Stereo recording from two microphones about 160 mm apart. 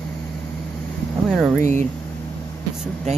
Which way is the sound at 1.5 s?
50° right (ahead or behind).